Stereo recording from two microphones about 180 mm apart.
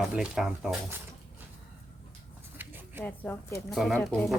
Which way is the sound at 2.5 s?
10° right (ahead or behind).